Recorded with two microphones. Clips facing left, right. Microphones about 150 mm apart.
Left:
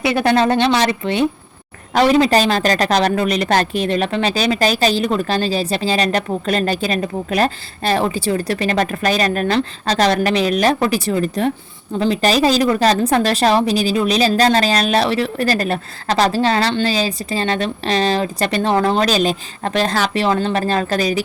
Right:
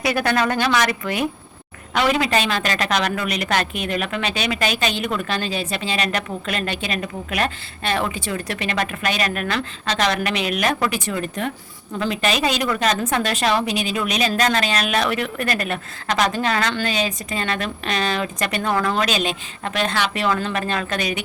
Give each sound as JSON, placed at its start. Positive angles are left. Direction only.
{"t": 0.0, "sound": "a woman's voice", "side_deg": 25}